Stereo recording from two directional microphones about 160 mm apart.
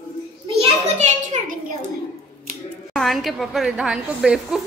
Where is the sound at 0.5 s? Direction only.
45° right (ahead or behind).